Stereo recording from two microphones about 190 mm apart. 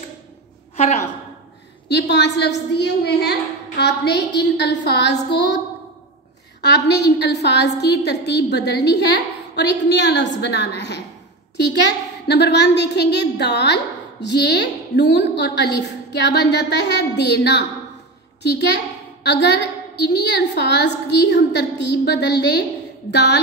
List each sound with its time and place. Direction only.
0.7 s a woman's voice: 35° left (ahead or behind)
1.9 s a woman's voice: 65° left (ahead or behind)
6.6 s a woman's voice: 65° left (ahead or behind)